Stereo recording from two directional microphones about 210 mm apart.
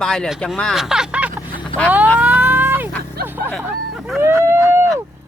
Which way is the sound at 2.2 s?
10° right (ahead or behind).